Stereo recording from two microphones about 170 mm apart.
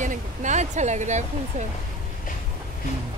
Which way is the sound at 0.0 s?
45° right (ahead or behind).